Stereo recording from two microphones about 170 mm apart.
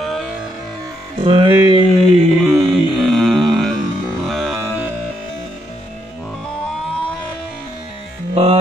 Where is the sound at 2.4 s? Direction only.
Centre (ahead or behind).